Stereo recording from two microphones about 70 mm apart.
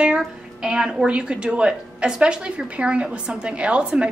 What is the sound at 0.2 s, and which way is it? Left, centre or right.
Speech, centre.